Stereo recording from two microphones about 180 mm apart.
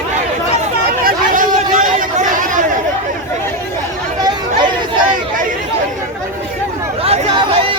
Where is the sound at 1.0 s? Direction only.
50° right (ahead or behind).